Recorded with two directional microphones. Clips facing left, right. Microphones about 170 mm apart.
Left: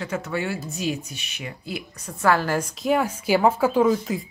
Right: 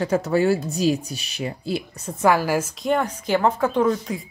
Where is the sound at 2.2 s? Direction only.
10° right (ahead or behind).